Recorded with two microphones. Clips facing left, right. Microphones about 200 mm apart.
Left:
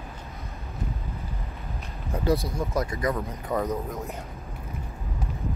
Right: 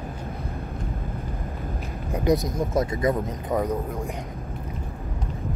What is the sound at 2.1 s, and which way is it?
Speech, 15° right (ahead or behind).